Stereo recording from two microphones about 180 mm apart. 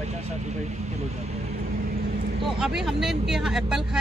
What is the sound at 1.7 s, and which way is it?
Vehicle, 55° right (ahead or behind).